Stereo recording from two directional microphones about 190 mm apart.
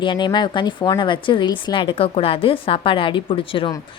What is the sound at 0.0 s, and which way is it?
A woman's voice, 25° left (ahead or behind).